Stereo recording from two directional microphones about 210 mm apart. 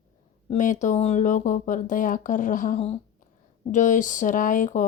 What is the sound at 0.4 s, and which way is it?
Speech, 35° left (ahead or behind).